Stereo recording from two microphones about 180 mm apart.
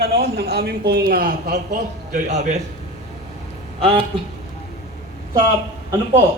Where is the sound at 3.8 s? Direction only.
30° right (ahead or behind).